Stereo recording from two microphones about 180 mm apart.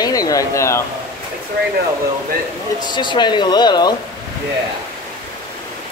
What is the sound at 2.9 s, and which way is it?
Speech, 25° left (ahead or behind).